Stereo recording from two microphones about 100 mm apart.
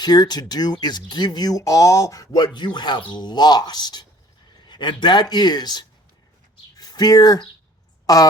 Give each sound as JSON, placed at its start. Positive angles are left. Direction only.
{"t": 0.0, "sound": "speech", "side_deg": 45}
{"t": 6.7, "sound": "a sound", "side_deg": 40}
{"t": 8.0, "sound": "a woman's voice", "side_deg": 40}